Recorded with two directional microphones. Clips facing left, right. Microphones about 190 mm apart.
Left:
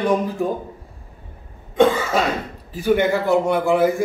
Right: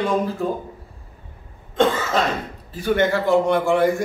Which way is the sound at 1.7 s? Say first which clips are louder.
Left 3 dB; 10° left (ahead or behind).